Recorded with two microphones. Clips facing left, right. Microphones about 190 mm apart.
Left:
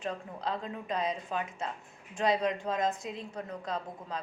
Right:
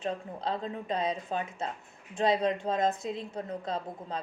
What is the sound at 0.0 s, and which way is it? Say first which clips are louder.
A woman's voice: right 2 dB; 25° right (ahead or behind).